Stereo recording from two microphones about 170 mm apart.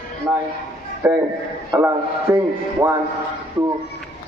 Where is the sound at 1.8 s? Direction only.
15° right (ahead or behind).